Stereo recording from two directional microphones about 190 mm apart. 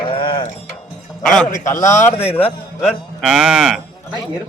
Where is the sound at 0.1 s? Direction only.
25° left (ahead or behind).